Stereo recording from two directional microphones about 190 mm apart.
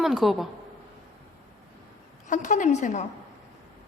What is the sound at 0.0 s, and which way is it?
Speech, centre (ahead or behind).